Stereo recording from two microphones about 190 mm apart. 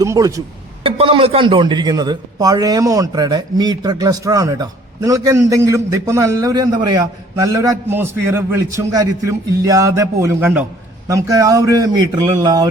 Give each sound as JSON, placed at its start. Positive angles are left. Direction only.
{"t": 0.0, "sound": "speech", "side_deg": -15}
{"t": 0.9, "sound": "a man's voice", "side_deg": -30}